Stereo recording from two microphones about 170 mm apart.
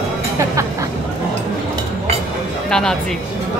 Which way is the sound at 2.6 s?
5° left (ahead or behind).